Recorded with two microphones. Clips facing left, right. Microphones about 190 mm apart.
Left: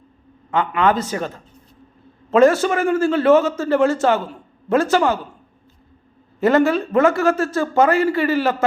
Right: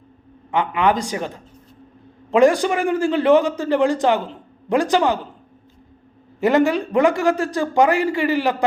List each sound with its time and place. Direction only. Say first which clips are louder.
0.5 s a man's voice: left 1 dB; 15° right (ahead or behind)
6.4 s a man's voice: left 1 dB; 15° right (ahead or behind)